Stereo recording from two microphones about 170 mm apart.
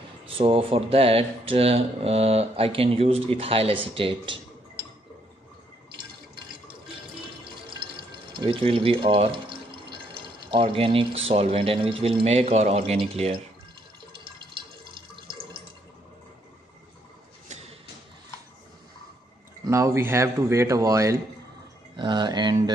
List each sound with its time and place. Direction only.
0.3 s speech: 30° right (ahead or behind)
8.3 s speech: 30° right (ahead or behind)
19.6 s speech: 15° right (ahead or behind)